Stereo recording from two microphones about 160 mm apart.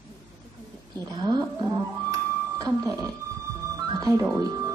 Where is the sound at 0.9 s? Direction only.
25° right (ahead or behind).